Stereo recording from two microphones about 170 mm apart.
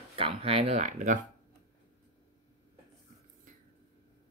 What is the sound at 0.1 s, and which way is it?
Speech, 35° right (ahead or behind).